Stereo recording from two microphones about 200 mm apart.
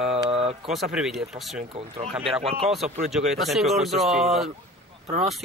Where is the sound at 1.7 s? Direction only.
30° right (ahead or behind).